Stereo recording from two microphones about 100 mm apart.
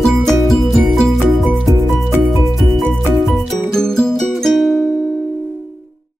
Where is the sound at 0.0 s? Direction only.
Centre (ahead or behind).